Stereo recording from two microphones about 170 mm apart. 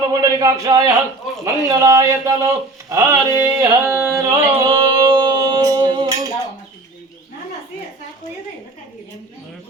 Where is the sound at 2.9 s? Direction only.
20° right (ahead or behind).